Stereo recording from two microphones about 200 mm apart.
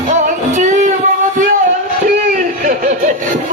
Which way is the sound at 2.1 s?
40° right (ahead or behind).